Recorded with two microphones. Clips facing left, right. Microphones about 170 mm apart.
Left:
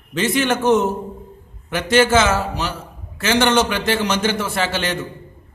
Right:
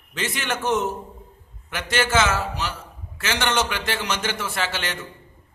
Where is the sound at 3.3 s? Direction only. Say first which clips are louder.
Left 7 dB; 40° left (ahead or behind).